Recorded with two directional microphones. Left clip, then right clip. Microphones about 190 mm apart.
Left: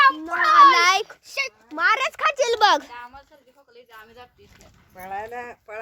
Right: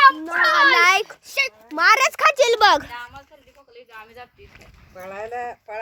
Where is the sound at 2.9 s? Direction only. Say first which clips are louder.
Right 4 dB; 50° left (ahead or behind).